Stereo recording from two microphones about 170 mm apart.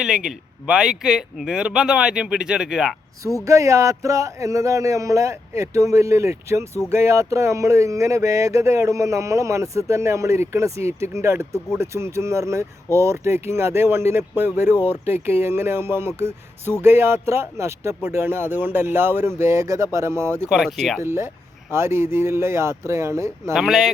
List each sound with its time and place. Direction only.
0.0 s speech: 5° right (ahead or behind)
3.2 s speech: 20° right (ahead or behind)
20.5 s speech: centre (ahead or behind)
21.0 s speech: 15° right (ahead or behind)
23.6 s speech: centre (ahead or behind)